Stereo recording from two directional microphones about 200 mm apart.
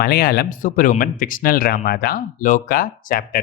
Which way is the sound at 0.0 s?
50° left (ahead or behind).